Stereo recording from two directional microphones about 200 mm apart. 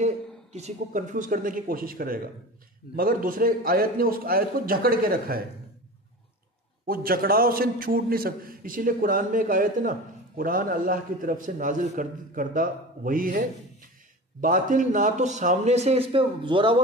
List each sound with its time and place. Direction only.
0.0 s a man's voice: 35° right (ahead or behind)
6.9 s a man's voice: 50° right (ahead or behind); by 16.8 s 25° right (ahead or behind)